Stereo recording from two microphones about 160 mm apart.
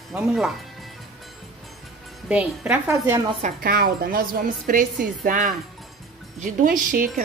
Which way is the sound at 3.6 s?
65° right (ahead or behind).